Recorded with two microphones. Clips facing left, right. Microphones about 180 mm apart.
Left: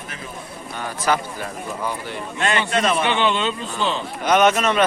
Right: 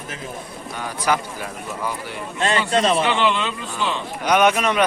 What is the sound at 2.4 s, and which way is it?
Speech, 30° right (ahead or behind).